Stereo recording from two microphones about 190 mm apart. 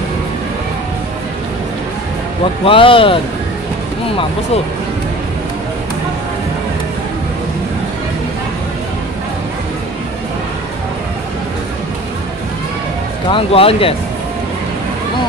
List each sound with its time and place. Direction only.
2.6 s speech: 30° left (ahead or behind)
13.3 s speech: 30° left (ahead or behind)